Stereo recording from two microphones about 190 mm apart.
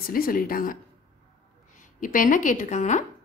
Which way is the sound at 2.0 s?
45° left (ahead or behind).